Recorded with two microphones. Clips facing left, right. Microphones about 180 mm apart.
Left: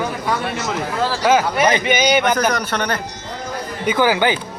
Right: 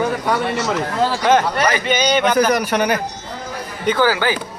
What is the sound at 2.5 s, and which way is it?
Speech, 10° right (ahead or behind).